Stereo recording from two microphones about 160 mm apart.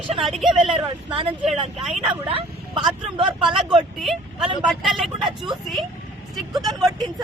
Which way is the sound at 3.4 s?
Centre (ahead or behind).